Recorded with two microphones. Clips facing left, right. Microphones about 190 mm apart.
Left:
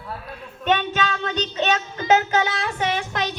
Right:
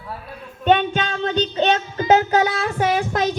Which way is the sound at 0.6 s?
35° right (ahead or behind).